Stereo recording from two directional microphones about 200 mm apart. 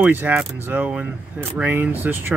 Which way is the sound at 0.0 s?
10° right (ahead or behind).